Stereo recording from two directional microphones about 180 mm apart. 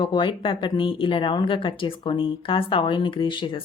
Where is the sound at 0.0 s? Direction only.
30° left (ahead or behind).